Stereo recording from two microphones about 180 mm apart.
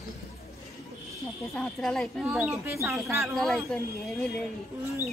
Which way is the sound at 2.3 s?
10° right (ahead or behind).